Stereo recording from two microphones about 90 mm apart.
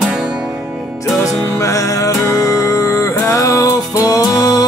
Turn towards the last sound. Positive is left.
turn(degrees=45)  # may be behind; listen again after turning